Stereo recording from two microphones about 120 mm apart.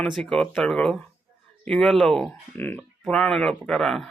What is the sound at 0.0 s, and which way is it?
Speech, 5° left (ahead or behind).